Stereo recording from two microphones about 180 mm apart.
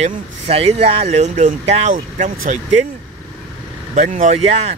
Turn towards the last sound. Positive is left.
turn(degrees=-35)  # may be behind; listen again after turning